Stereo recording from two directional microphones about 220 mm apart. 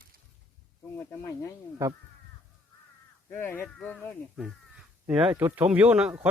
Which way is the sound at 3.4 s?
10° left (ahead or behind).